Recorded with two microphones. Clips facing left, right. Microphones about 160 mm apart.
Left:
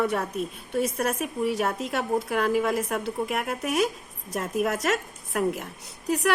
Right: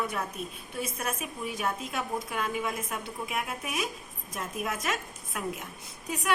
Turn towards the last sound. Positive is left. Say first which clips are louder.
# left 6 dB
turn(degrees=70)  # may be behind; listen again after turning